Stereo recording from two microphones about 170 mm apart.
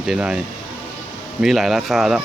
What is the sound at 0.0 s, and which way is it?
Speech, 5° right (ahead or behind).